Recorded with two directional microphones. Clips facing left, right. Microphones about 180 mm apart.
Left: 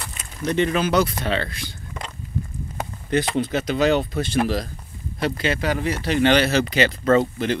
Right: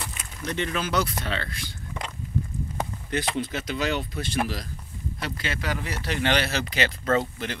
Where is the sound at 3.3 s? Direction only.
60° left (ahead or behind).